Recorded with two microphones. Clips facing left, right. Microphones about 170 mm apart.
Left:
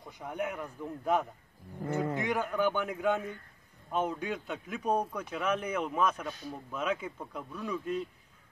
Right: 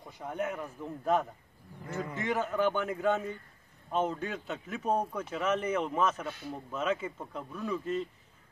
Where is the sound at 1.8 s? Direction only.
60° left (ahead or behind).